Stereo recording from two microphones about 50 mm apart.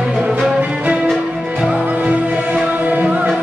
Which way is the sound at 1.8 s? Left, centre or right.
Right.